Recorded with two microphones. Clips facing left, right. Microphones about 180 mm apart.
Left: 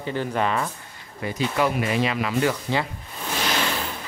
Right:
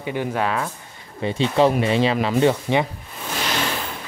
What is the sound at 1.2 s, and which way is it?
Speech, 25° right (ahead or behind).